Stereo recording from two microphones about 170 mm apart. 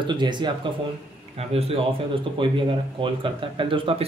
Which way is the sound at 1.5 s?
35° right (ahead or behind).